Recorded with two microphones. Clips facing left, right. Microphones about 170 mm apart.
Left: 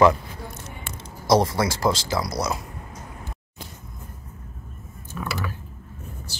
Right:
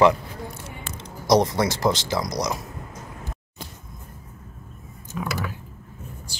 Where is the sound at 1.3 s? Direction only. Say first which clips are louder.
Right 1 dB; 20° right (ahead or behind).